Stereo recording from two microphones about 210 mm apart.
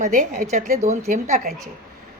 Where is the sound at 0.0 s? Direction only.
35° right (ahead or behind).